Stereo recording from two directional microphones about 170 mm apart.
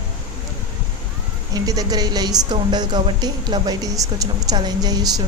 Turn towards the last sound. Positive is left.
turn(degrees=-25)  # may be behind; listen again after turning